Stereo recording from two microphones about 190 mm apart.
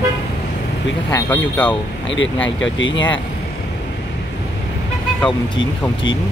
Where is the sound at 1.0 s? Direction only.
15° left (ahead or behind).